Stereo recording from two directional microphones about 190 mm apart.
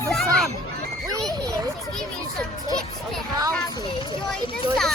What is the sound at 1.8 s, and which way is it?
Speech, centre (ahead or behind).